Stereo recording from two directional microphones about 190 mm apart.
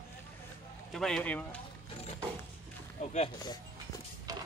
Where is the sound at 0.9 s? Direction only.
Centre (ahead or behind).